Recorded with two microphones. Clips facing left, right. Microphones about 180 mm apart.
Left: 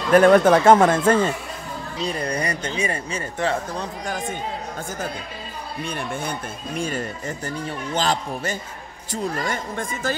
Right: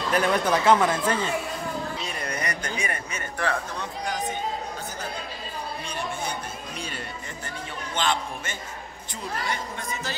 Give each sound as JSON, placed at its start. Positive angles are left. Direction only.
{"t": 0.1, "sound": "speech", "side_deg": 50}
{"t": 2.0, "sound": "speech", "side_deg": 30}
{"t": 4.0, "sound": "speech", "side_deg": 45}
{"t": 5.9, "sound": "speech", "side_deg": 55}
{"t": 6.8, "sound": "a man's voice", "side_deg": 45}
{"t": 9.1, "sound": "speech", "side_deg": 50}